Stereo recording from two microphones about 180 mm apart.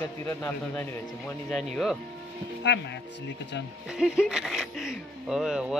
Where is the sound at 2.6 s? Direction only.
75° left (ahead or behind).